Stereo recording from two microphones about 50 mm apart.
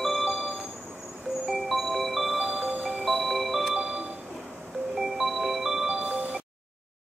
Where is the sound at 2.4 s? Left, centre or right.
Right.